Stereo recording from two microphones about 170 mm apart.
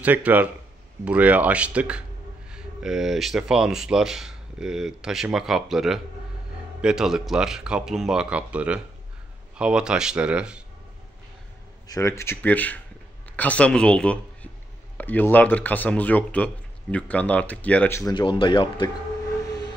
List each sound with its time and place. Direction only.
0.0 s speech: 10° right (ahead or behind)
11.9 s speech: 15° left (ahead or behind)
18.1 s speech: 30° left (ahead or behind)